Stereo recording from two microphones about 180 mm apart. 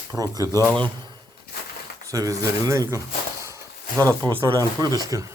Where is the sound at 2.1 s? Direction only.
20° right (ahead or behind).